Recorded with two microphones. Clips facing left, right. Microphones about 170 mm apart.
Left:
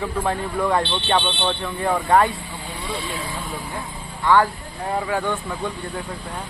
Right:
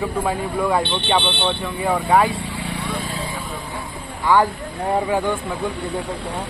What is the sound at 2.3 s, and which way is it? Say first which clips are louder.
Vehicle: right 6 dB; 80° right.